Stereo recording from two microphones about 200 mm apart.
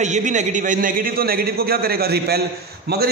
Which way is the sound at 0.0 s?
35° right (ahead or behind).